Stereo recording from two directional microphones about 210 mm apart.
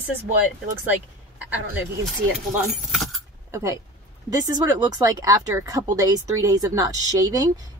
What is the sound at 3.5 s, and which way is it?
Speech, 15° right (ahead or behind).